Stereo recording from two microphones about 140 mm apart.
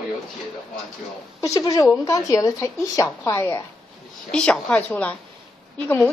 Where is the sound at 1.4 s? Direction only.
25° left (ahead or behind).